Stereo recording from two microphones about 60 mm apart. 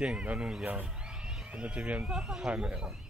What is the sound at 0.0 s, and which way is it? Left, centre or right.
Speech, centre.